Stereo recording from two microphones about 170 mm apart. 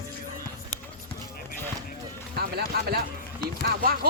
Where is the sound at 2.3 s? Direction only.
65° right (ahead or behind).